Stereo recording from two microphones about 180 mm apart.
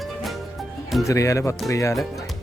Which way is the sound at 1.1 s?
15° left (ahead or behind).